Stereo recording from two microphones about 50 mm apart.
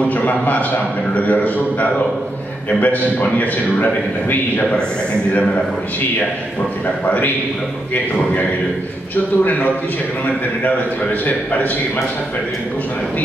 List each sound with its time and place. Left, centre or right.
0.1 s a man's voice: left
9.1 s a man's voice: left